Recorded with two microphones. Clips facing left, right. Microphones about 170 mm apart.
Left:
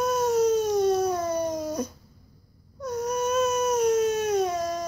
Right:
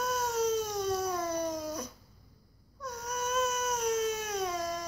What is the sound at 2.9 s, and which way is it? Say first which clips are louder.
Baby cry: left 9 dB; 40° left (ahead or behind).